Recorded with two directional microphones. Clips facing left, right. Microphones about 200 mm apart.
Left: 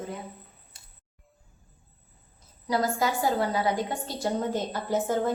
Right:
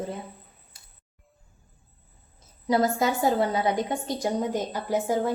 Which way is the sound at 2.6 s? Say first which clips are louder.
Right 3 dB; 20° right (ahead or behind).